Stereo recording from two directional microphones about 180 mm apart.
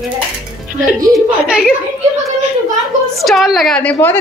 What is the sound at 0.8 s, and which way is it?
Speech, centre (ahead or behind).